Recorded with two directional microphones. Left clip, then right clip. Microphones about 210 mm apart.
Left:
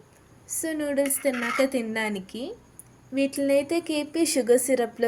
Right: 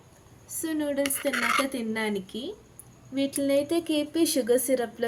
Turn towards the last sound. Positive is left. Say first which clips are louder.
# left 3 dB
turn(degrees=10)  # may be behind; listen again after turning